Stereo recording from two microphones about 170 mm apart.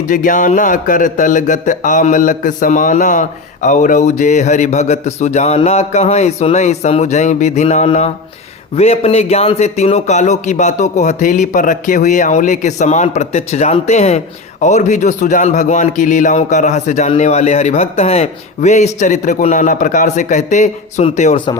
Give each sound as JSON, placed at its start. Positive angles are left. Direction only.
{"t": 0.1, "sound": "a man's voice", "side_deg": 50}